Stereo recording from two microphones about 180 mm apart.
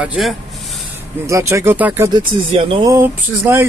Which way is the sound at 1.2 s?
15° right (ahead or behind).